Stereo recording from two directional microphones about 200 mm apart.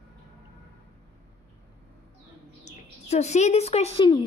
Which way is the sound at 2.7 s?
35° left (ahead or behind).